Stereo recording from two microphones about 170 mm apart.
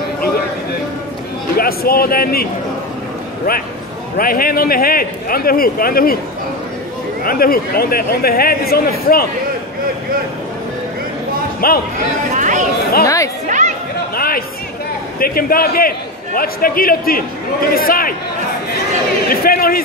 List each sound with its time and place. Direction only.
1.6 s speech: 60° left (ahead or behind)
4.2 s speech: 60° left (ahead or behind)
7.2 s speech: 60° left (ahead or behind)
11.6 s speech: 60° left (ahead or behind)
12.4 s speech: 50° right (ahead or behind)
13.0 s speech: 20° left (ahead or behind)
13.5 s chatter: 45° right (ahead or behind)
14.1 s a sound: 60° left (ahead or behind)
15.1 s speech: 60° left (ahead or behind)
19.2 s speech: 60° left (ahead or behind)